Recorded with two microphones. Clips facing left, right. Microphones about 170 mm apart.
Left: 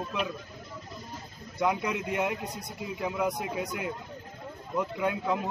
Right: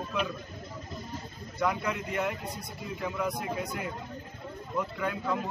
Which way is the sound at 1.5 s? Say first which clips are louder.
Left 2 dB; 15° left (ahead or behind).